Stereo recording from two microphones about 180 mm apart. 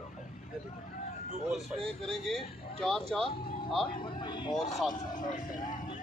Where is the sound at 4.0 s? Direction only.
25° left (ahead or behind).